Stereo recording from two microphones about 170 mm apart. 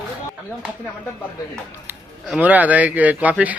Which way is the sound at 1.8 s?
10° right (ahead or behind).